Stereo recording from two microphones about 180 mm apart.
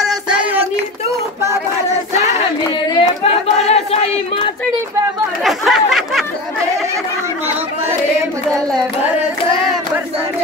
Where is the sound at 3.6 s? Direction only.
35° left (ahead or behind).